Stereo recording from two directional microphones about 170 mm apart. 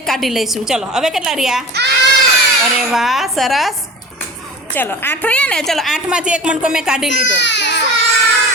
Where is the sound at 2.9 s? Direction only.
Centre (ahead or behind).